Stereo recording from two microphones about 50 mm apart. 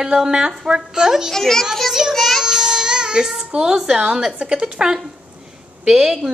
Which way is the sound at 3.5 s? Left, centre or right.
Centre.